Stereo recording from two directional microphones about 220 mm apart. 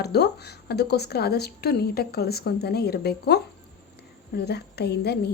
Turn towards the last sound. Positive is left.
turn(degrees=45)  # may be behind; listen again after turning